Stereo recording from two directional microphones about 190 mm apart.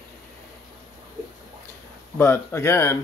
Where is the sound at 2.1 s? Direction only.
15° left (ahead or behind).